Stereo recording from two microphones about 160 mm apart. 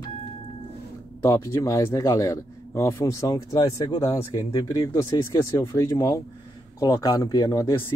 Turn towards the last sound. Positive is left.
turn(degrees=20)  # may be behind; listen again after turning